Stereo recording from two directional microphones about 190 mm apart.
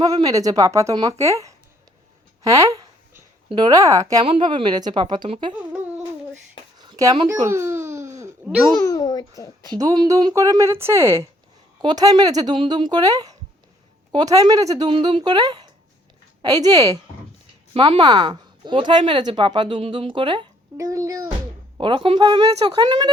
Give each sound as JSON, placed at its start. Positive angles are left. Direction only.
{"t": 0.0, "sound": "speech", "side_deg": -20}
{"t": 2.4, "sound": "a sound", "side_deg": -15}
{"t": 4.2, "sound": "speech", "side_deg": -30}
{"t": 6.7, "sound": "babbling", "side_deg": -20}
{"t": 8.4, "sound": "a child's voice", "side_deg": 0}
{"t": 8.8, "sound": "a sound", "side_deg": 15}
{"t": 9.7, "sound": "speech", "side_deg": -20}